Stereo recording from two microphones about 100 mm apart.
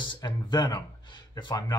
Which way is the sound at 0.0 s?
50° left (ahead or behind).